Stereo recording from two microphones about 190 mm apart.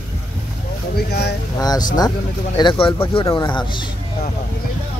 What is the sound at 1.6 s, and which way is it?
Speech, 20° left (ahead or behind).